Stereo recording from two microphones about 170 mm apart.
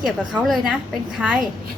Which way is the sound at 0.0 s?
Centre (ahead or behind).